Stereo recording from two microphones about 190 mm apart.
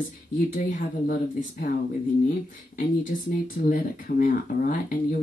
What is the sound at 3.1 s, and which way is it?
Speech, 45° left (ahead or behind).